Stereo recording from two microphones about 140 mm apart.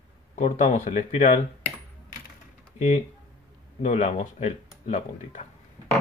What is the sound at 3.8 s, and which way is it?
Speech, 55° left (ahead or behind).